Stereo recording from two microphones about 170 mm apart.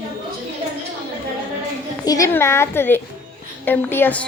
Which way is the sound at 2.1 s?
20° left (ahead or behind).